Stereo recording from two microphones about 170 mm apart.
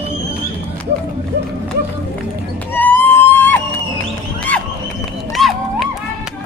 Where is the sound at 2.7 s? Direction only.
10° left (ahead or behind).